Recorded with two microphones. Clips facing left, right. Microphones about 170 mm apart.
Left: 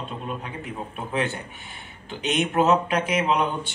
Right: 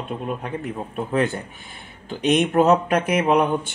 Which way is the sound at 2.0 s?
40° right (ahead or behind).